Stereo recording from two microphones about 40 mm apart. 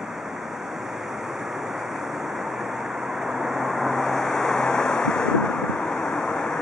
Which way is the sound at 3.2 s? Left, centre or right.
Centre.